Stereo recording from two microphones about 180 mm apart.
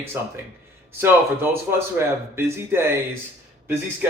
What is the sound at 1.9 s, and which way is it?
Speech, 15° right (ahead or behind).